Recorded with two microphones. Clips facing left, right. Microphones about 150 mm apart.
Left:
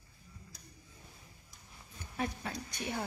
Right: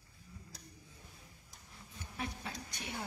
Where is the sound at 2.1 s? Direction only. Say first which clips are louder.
Left 6 dB; 50° left (ahead or behind).